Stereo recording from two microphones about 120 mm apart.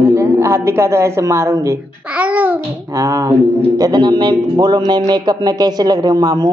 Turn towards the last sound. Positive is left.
turn(degrees=-35)  # may be behind; listen again after turning